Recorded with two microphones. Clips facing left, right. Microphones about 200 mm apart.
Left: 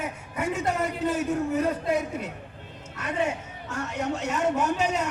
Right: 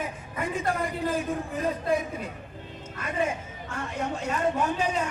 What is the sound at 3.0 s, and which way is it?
A woman's voice, 75° left (ahead or behind).